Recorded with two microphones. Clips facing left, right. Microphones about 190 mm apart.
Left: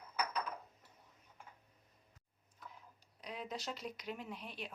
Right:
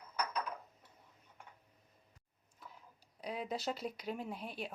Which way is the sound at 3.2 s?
35° right (ahead or behind).